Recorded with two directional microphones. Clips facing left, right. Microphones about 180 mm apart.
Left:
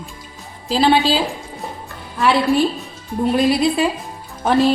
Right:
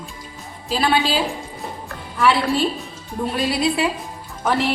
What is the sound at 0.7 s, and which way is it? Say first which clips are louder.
Speech: left 5 dB; 25° left (ahead or behind).